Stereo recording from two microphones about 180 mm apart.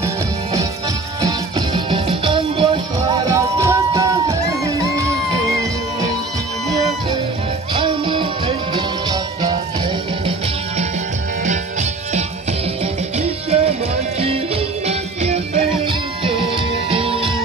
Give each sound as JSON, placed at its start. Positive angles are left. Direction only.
{"t": 1.2, "sound": "music", "side_deg": -25}
{"t": 7.7, "sound": "music", "side_deg": -30}
{"t": 13.2, "sound": "music", "side_deg": -35}
{"t": 14.9, "sound": "music", "side_deg": -35}
{"t": 16.9, "sound": "music", "side_deg": -30}